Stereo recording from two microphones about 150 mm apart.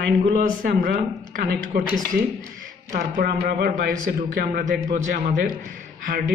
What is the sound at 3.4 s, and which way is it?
Speech, 80° right.